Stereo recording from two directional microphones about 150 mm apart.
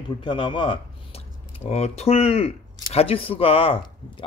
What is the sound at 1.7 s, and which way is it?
Speech, 45° left (ahead or behind).